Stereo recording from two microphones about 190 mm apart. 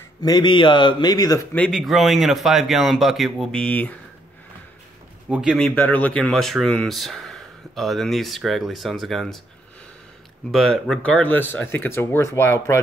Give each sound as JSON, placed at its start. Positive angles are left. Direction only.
{"t": 0.2, "sound": "a man's voice", "side_deg": 20}
{"t": 1.6, "sound": "speech", "side_deg": 0}
{"t": 5.3, "sound": "speech", "side_deg": -5}
{"t": 5.8, "sound": "speech", "side_deg": 10}
{"t": 10.5, "sound": "speech", "side_deg": 0}